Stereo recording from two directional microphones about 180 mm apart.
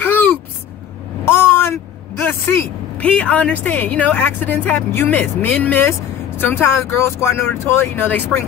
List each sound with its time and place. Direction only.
0.0 s a sound: 10° left (ahead or behind)
1.2 s vehicle: 15° left (ahead or behind)
2.2 s a woman's voice: 10° left (ahead or behind)